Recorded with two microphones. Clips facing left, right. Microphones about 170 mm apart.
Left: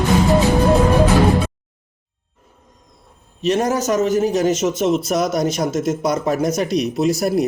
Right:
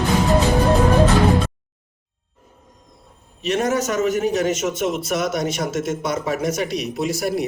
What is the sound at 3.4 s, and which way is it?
A man's voice, 35° left (ahead or behind).